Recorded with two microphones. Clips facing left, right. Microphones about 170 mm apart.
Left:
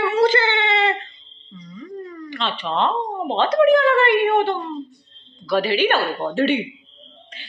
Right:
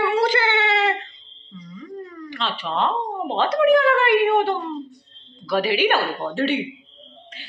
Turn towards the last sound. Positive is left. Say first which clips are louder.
# even
turn(degrees=-5)  # may be behind; listen again after turning